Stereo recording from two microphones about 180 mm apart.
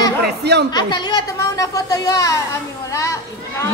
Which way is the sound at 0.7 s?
25° left (ahead or behind).